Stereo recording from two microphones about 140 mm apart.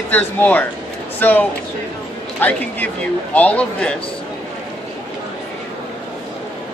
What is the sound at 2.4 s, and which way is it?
A man's voice, 15° left (ahead or behind).